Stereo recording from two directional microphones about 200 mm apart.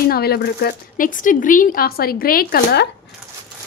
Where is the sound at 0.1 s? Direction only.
50° left (ahead or behind).